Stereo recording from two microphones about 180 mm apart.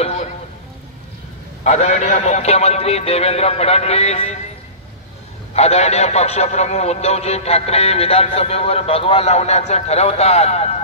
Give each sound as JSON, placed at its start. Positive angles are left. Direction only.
{"t": 0.0, "sound": "a sound", "side_deg": 40}
{"t": 1.6, "sound": "speech", "side_deg": 40}
{"t": 5.5, "sound": "speech", "side_deg": 35}